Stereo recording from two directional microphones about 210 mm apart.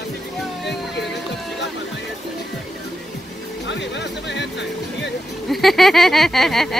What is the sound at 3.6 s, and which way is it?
Speech, 55° left (ahead or behind).